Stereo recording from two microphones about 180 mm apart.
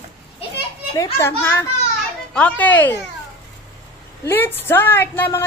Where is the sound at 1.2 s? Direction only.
15° left (ahead or behind).